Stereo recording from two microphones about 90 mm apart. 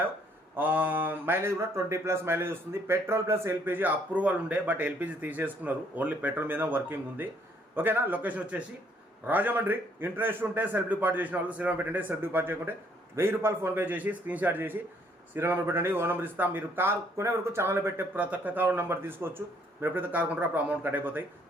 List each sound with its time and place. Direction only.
0.5 s speech: 20° right (ahead or behind)